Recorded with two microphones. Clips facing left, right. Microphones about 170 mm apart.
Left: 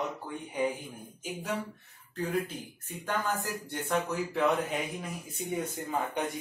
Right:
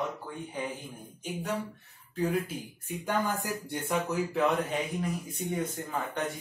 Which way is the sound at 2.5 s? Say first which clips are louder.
Right 4 dB; 10° right (ahead or behind).